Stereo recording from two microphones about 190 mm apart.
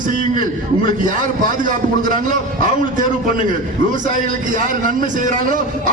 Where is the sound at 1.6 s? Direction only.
45° right (ahead or behind).